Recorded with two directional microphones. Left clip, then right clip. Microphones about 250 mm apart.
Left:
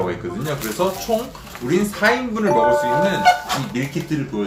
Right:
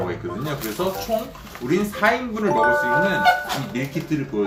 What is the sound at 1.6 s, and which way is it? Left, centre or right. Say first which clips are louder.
Speech: left 2 dB; centre.